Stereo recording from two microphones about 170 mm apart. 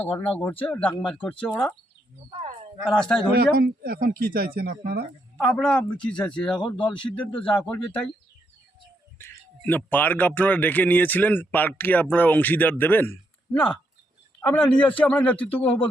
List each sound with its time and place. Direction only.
0.0 s speech: 10° left (ahead or behind)
2.8 s speech: 5° left (ahead or behind)
3.3 s speech: 60° right (ahead or behind)
5.4 s speech: 5° left (ahead or behind)
7.2 s speech: 30° left (ahead or behind)
7.4 s speech: 5° left (ahead or behind)
9.1 s speech: 10° left (ahead or behind)
14.4 s speech: 10° left (ahead or behind)